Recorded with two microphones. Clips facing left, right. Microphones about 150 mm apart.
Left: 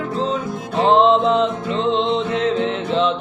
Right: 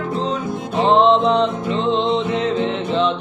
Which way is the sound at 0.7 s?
Centre (ahead or behind).